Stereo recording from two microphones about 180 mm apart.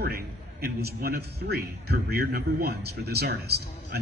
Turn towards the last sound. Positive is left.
turn(degrees=-60)  # may be behind; listen again after turning